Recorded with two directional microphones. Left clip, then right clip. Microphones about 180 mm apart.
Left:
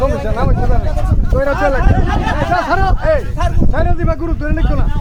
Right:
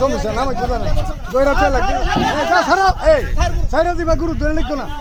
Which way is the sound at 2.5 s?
55° right (ahead or behind).